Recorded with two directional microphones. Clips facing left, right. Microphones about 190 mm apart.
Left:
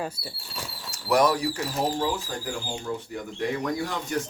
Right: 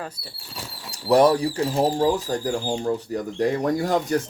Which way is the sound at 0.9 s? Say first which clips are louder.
Right 5 dB; 30° right (ahead or behind).